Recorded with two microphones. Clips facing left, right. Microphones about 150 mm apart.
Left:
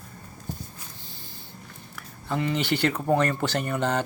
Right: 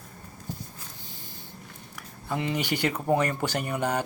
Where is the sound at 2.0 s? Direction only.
15° right (ahead or behind).